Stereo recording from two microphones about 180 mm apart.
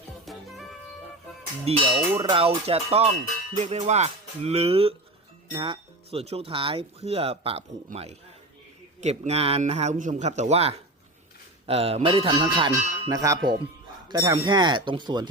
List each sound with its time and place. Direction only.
0.3 s music: centre (ahead or behind)
1.7 s speech: 35° right (ahead or behind)